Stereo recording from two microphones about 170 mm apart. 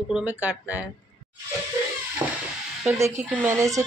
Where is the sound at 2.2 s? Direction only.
15° right (ahead or behind).